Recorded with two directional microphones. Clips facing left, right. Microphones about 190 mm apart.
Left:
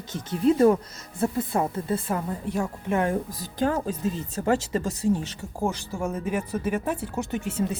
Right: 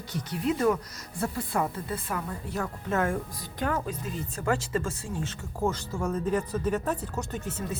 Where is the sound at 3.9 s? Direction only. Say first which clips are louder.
Left 6 dB; 40° left (ahead or behind).